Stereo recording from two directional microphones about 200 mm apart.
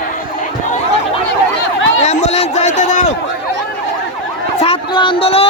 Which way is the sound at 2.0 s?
35° left (ahead or behind).